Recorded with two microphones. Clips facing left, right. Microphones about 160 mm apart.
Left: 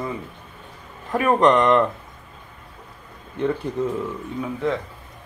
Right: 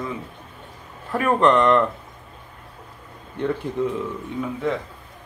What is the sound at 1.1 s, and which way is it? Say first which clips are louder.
Speech: left 1 dB; 10° left (ahead or behind).